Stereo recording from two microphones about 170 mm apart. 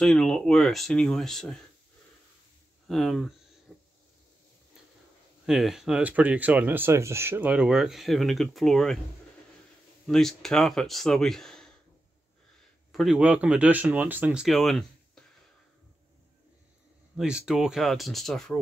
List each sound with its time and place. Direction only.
0.0 s speech: 5° left (ahead or behind)
2.9 s speech: centre (ahead or behind)
3.7 s a sound: centre (ahead or behind)
5.5 s speech: centre (ahead or behind)
10.0 s speech: 5° left (ahead or behind)
12.9 s speech: centre (ahead or behind)
17.2 s speech: 5° right (ahead or behind)